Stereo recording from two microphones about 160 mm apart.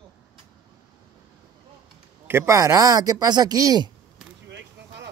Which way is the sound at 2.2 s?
15° right (ahead or behind).